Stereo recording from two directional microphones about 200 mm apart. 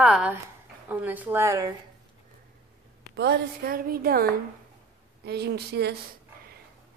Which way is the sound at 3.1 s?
55° right (ahead or behind).